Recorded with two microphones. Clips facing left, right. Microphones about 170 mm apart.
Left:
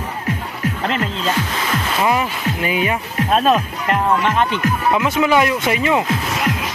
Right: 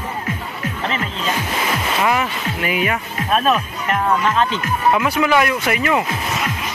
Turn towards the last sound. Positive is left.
turn(degrees=25)  # may be behind; listen again after turning